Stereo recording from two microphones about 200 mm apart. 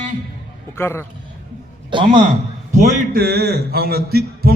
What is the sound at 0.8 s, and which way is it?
Speech, 10° left (ahead or behind).